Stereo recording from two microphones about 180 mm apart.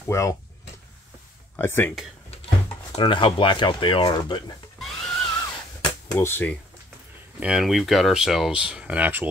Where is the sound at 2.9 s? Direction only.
30° left (ahead or behind).